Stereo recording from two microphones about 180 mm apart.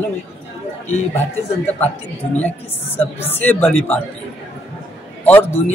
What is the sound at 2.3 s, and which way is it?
A woman's voice, 10° left (ahead or behind).